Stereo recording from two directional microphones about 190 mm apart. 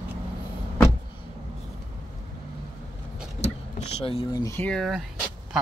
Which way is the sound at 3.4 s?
35° left (ahead or behind).